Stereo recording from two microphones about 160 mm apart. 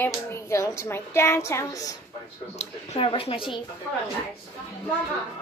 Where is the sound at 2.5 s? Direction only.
40° left (ahead or behind).